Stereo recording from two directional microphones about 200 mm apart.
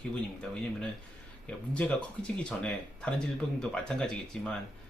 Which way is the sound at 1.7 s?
5° left (ahead or behind).